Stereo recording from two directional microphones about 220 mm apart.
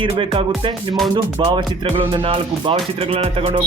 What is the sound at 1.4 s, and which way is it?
A man's voice, 20° right (ahead or behind).